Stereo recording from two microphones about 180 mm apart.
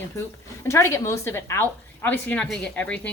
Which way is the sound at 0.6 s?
15° left (ahead or behind).